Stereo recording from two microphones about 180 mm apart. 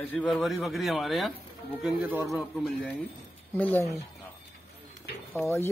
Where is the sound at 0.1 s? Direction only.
5° left (ahead or behind).